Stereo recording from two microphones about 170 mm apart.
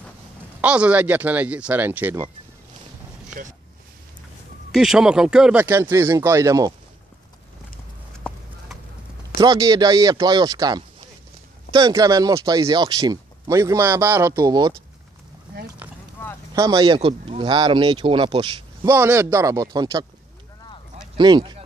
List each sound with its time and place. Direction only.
0.6 s speech: 5° right (ahead or behind)
4.7 s speech: 5° right (ahead or behind); by 6.7 s 20° right (ahead or behind)
8.3 s clip-clop: 5° left (ahead or behind)
9.4 s speech: 20° right (ahead or behind)
16.5 s speech: 20° right (ahead or behind)
18.9 s speech: 15° right (ahead or behind)
21.2 s speech: 25° right (ahead or behind)